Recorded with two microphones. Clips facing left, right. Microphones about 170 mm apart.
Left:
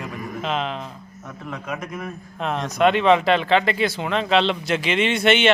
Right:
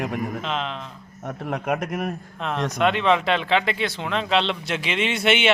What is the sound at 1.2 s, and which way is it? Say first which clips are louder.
Speech: right 6 dB; 50° right (ahead or behind).